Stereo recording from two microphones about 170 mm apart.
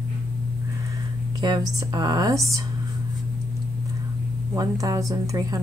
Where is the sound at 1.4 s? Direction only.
25° right (ahead or behind).